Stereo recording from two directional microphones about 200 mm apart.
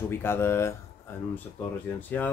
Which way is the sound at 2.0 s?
10° left (ahead or behind).